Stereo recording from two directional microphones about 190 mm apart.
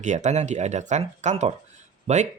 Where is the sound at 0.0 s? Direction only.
40° right (ahead or behind).